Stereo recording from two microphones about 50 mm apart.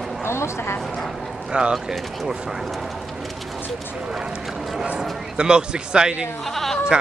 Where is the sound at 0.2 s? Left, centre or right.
Left.